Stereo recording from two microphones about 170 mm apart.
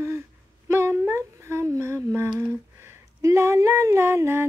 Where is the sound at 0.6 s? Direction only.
15° right (ahead or behind).